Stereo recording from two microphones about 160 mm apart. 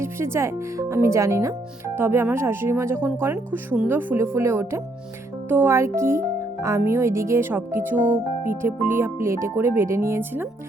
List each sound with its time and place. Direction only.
0.0 s speech: 15° right (ahead or behind)